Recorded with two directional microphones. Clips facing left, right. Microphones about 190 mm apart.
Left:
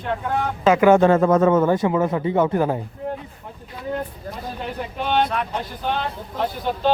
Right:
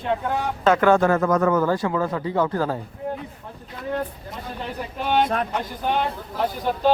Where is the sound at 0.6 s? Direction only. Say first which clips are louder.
Left 3 dB; 10° left (ahead or behind).